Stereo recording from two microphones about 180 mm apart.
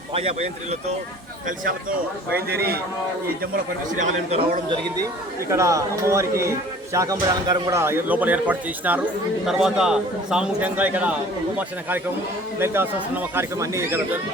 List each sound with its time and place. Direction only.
0.1 s speech: 35° right (ahead or behind)
2.3 s a man's voice: 60° right (ahead or behind)
3.4 s speech: 50° right (ahead or behind)
5.5 s a man's voice: 15° right (ahead or behind)